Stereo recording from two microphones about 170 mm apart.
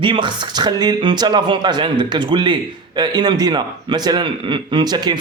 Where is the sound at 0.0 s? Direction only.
30° right (ahead or behind).